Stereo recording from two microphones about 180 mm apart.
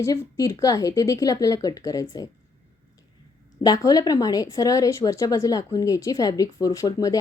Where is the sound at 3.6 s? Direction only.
20° left (ahead or behind).